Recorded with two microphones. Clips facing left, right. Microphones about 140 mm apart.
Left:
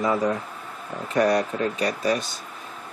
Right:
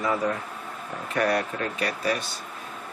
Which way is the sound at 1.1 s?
20° left (ahead or behind).